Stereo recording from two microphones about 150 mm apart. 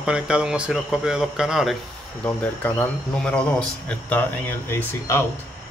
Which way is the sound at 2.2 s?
15° left (ahead or behind).